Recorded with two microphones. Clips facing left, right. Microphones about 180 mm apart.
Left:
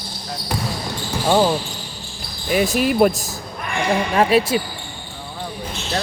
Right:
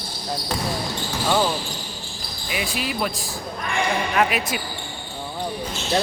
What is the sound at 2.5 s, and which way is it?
Speech, 40° left (ahead or behind).